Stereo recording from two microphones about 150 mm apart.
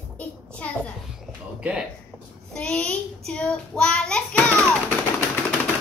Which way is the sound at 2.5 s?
5° left (ahead or behind).